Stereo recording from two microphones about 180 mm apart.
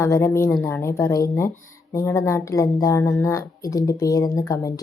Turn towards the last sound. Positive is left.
turn(degrees=20)  # may be behind; listen again after turning